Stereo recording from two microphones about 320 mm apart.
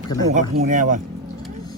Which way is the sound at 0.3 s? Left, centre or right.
Right.